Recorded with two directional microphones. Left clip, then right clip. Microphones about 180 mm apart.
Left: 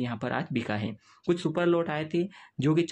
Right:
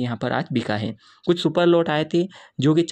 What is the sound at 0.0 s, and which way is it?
Speech, 30° right (ahead or behind).